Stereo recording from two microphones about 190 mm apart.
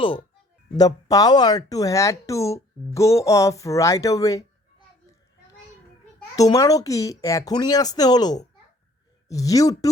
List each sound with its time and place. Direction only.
0.8 s speech: 20° left (ahead or behind)
6.3 s speech: 20° left (ahead or behind)